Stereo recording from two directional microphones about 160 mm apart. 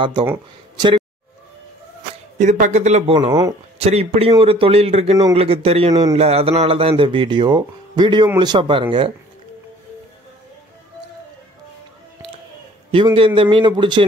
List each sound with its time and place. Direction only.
0.7 s a woman's voice: 25° right (ahead or behind)
2.3 s a man's voice: 50° right (ahead or behind); by 9.1 s 30° right (ahead or behind)
12.9 s a man's voice: 35° right (ahead or behind)